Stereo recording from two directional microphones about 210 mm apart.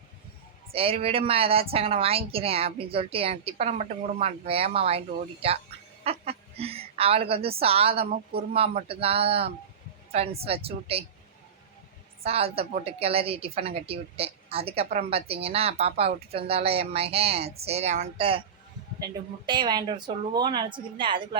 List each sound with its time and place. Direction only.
0.7 s a woman's voice: 25° right (ahead or behind)
12.2 s a woman's voice: 30° right (ahead or behind)
19.5 s a woman's voice: 20° right (ahead or behind)